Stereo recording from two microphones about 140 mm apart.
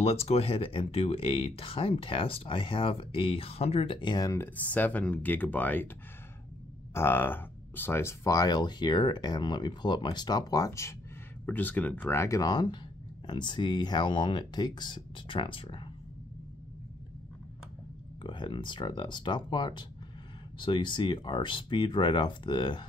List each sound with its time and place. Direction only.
0.0 s speech: 45° left (ahead or behind); by 4.5 s 25° left (ahead or behind)
4.6 s speech: 10° left (ahead or behind)
6.9 s speech: 15° left (ahead or behind); by 15.9 s 35° left (ahead or behind)
18.2 s speech: 35° left (ahead or behind)